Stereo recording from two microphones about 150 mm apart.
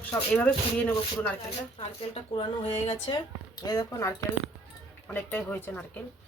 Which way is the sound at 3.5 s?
25° left (ahead or behind).